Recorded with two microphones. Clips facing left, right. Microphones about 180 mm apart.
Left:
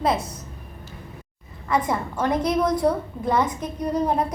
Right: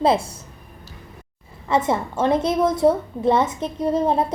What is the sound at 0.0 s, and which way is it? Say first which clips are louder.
Speech: right 4 dB; 30° right (ahead or behind).